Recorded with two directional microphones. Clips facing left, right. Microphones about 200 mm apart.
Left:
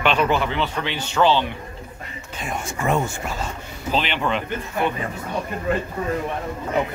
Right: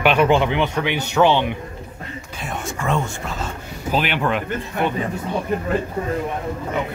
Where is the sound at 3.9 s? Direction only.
10° right (ahead or behind).